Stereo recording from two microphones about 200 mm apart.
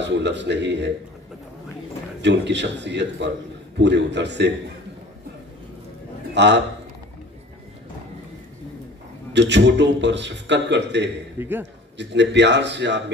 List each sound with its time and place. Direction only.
0.0 s a man's voice: 60° right (ahead or behind)
2.2 s a man's voice: 60° right (ahead or behind)
6.3 s a man's voice: 60° right (ahead or behind)
9.3 s a man's voice: 60° right (ahead or behind)
11.3 s a man's voice: 10° right (ahead or behind)
12.0 s a man's voice: 60° right (ahead or behind)